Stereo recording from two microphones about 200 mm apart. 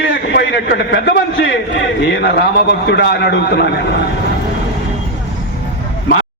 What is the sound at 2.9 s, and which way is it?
Speech, 55° left (ahead or behind).